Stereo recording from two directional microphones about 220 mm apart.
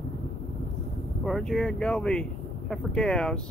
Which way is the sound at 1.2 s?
Centre (ahead or behind).